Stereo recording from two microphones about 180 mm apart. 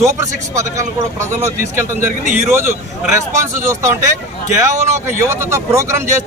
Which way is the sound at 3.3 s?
15° right (ahead or behind).